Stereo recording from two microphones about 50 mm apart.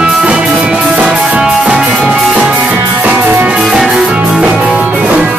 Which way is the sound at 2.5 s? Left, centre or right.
Right.